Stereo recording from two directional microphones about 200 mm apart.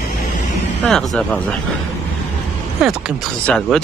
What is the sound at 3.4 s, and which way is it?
Speech, 5° left (ahead or behind).